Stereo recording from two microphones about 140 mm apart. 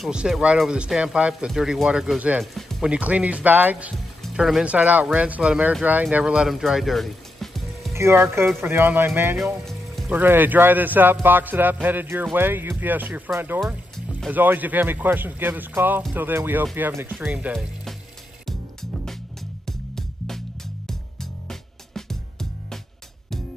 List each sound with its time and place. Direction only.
0.0 s speech: 5° right (ahead or behind)
2.4 s speech: centre (ahead or behind)
4.2 s speech: centre (ahead or behind)
7.9 s speech: 20° right (ahead or behind)
18.4 s music: 5° left (ahead or behind)